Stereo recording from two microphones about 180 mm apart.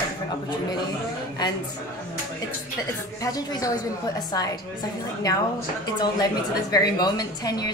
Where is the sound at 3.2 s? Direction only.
20° left (ahead or behind).